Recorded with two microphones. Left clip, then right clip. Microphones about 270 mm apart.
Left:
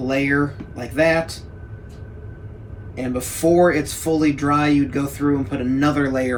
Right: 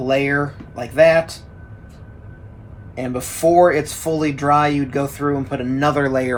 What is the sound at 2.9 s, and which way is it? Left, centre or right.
Speech, right.